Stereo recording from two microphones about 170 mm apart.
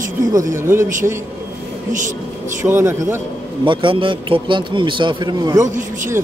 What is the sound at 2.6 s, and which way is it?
Speech, 15° right (ahead or behind).